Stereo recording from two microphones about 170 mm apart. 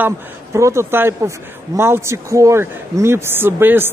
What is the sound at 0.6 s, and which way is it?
Speech, 15° right (ahead or behind).